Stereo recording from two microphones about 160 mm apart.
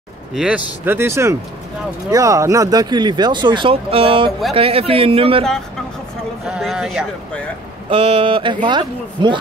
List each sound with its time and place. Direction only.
0.3 s speech: 5° right (ahead or behind)
0.8 s speech: 15° right (ahead or behind); by 5.4 s 35° right (ahead or behind)
6.4 s speech: 5° right (ahead or behind)
7.9 s speech: 35° right (ahead or behind)